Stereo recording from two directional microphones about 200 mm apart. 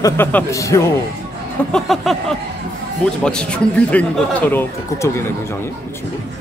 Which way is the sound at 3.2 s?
5° left (ahead or behind).